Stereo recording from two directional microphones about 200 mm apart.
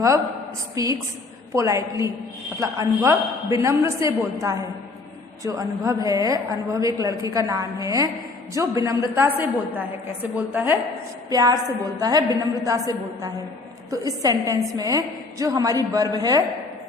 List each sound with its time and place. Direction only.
0.8 s a woman's voice: 15° right (ahead or behind)